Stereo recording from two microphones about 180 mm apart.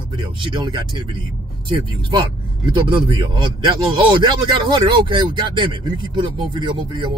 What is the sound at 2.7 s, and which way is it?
Speech, 25° right (ahead or behind).